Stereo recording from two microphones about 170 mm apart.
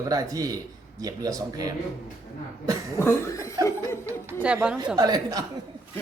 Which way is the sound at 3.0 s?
15° left (ahead or behind).